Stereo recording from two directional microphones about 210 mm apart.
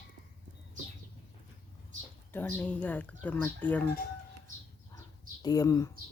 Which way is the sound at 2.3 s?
10° left (ahead or behind).